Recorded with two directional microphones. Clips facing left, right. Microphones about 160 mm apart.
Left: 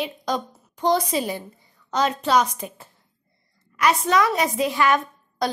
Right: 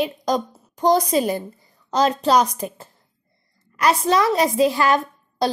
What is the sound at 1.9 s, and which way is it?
A woman's voice, 35° right (ahead or behind).